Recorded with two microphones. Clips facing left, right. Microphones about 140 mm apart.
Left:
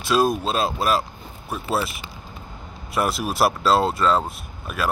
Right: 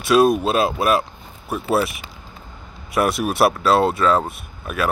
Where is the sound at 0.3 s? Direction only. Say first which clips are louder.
Right 5 dB; 5° right (ahead or behind).